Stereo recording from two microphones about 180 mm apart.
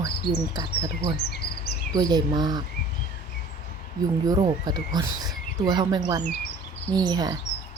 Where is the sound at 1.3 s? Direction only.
65° left (ahead or behind).